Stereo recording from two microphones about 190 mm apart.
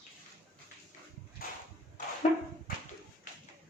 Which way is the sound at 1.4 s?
50° left (ahead or behind).